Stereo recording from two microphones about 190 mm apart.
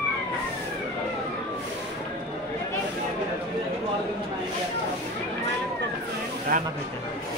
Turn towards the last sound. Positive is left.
turn(degrees=-50)  # may be behind; listen again after turning